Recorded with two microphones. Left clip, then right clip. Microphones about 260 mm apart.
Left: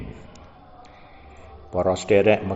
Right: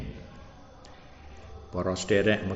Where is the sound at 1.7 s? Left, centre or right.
Centre.